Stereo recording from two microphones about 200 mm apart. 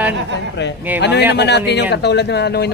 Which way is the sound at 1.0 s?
60° left (ahead or behind).